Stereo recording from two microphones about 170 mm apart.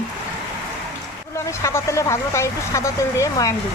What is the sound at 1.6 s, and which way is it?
Speech, 15° left (ahead or behind).